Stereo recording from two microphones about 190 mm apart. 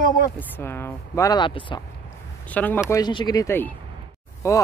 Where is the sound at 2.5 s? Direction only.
10° left (ahead or behind).